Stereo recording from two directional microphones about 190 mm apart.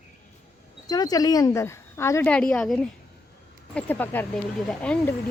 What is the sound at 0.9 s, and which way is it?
A woman's voice, 20° left (ahead or behind).